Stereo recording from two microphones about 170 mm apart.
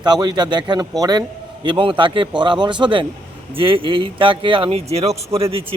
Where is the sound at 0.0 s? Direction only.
25° right (ahead or behind).